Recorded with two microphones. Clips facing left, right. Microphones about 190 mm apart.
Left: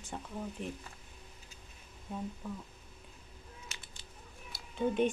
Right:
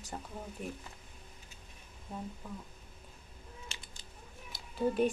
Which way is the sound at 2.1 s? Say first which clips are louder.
Left 2 dB; centre (ahead or behind).